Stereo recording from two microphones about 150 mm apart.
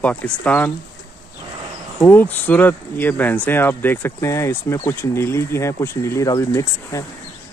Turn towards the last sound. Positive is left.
turn(degrees=20)  # may be behind; listen again after turning